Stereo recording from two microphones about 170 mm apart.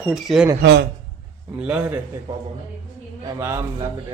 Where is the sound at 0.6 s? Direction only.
90° right.